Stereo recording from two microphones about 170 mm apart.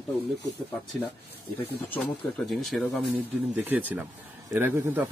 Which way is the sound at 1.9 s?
5° left (ahead or behind).